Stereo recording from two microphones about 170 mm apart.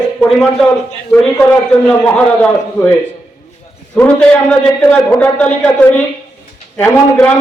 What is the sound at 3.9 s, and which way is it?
A man's voice, 5° left (ahead or behind).